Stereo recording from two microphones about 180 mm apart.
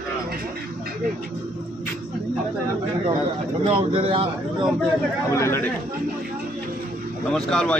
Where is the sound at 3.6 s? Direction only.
30° right (ahead or behind).